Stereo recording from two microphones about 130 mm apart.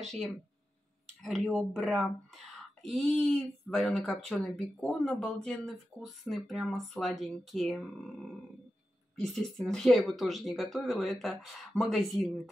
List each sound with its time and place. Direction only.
0.0 s speech: 5° left (ahead or behind)
9.1 s speech: 5° left (ahead or behind)